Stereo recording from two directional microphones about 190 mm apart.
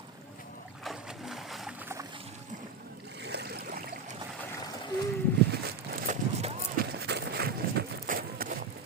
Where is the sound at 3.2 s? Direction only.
60° right (ahead or behind).